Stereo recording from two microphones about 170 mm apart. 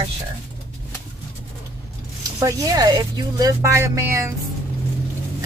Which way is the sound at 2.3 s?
20° right (ahead or behind).